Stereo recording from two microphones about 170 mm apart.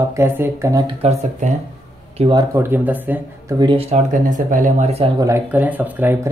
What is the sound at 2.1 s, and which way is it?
Speech, 30° right (ahead or behind).